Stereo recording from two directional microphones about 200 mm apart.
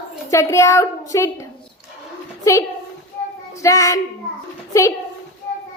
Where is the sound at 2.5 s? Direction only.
15° left (ahead or behind).